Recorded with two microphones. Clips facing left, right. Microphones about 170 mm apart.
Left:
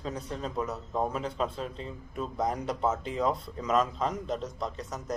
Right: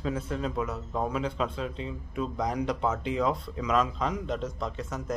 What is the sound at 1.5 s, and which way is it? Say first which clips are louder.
Speech: right 3 dB; 40° left (ahead or behind).